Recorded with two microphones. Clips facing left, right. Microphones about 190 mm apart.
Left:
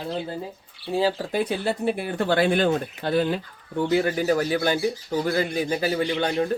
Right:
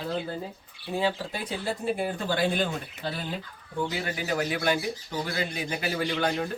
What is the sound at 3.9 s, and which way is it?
Speech, 45° left (ahead or behind).